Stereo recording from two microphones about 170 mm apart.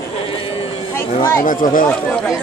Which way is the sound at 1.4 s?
50° left (ahead or behind).